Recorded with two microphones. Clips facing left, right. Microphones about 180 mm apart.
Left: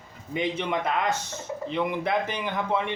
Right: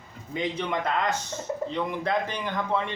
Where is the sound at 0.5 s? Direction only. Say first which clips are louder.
Left 1 dB; 15° left (ahead or behind).